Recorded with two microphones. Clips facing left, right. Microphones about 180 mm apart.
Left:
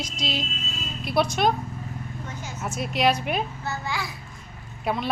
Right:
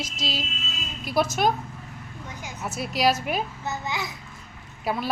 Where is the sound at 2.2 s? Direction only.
15° right (ahead or behind).